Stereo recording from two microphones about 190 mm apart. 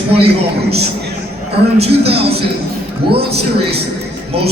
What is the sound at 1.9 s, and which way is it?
Speech, 30° right (ahead or behind).